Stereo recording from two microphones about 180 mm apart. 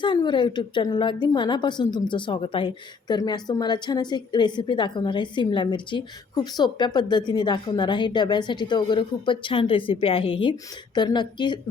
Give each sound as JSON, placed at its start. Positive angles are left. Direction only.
{"t": 0.0, "sound": "a woman's voice", "side_deg": 25}